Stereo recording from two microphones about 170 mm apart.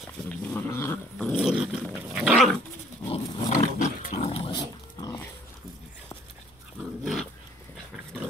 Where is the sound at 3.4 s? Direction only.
45° left (ahead or behind).